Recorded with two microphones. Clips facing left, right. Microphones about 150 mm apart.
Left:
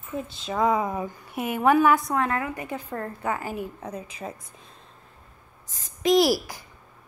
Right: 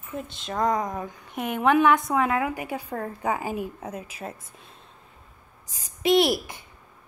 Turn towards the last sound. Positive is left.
turn(degrees=0)  # may be behind; listen again after turning